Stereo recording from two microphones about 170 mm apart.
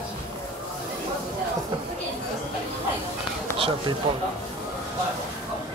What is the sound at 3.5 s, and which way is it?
Speech, 35° right (ahead or behind).